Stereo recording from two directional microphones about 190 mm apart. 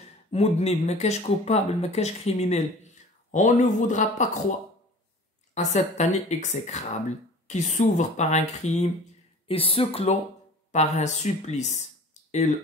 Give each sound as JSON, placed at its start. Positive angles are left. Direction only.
{"t": 0.3, "sound": "speech", "side_deg": 35}
{"t": 5.5, "sound": "speech", "side_deg": 35}